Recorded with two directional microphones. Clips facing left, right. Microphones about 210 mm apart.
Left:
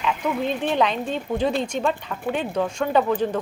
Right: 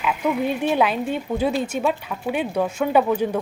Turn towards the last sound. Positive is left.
turn(degrees=-10)  # may be behind; listen again after turning